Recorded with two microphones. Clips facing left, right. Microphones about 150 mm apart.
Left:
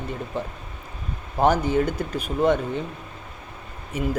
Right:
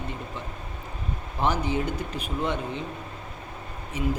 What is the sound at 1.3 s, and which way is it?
Speech, 45° left (ahead or behind).